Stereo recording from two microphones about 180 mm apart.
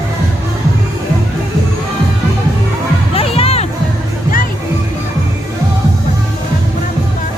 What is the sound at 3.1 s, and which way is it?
Music, 30° left (ahead or behind).